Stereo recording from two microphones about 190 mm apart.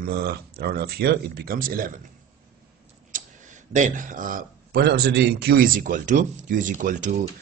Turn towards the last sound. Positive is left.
turn(degrees=-45)  # may be behind; listen again after turning